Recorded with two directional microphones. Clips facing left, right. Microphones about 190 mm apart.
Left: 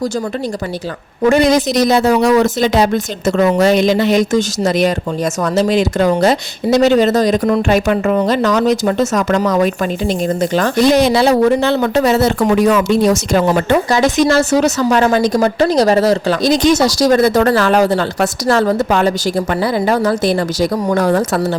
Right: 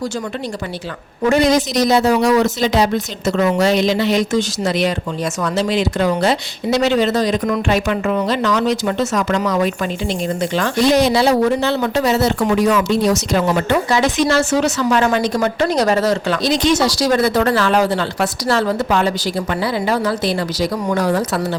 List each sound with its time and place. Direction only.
1.3 s speech: 55° left (ahead or behind)